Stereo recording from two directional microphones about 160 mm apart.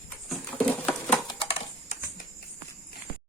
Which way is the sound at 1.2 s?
35° left (ahead or behind).